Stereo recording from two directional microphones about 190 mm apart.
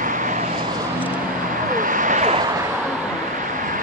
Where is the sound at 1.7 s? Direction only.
45° right (ahead or behind).